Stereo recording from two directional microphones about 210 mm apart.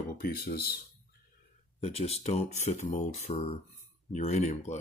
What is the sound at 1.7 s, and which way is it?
Speech, 30° left (ahead or behind).